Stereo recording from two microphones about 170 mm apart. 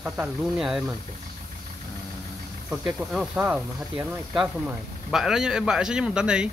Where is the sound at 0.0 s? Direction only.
5° right (ahead or behind).